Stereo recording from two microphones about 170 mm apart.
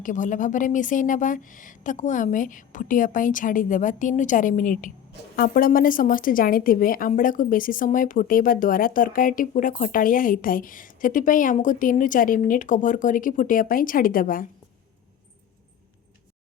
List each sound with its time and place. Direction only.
0.0 s a woman's voice: 50° left (ahead or behind)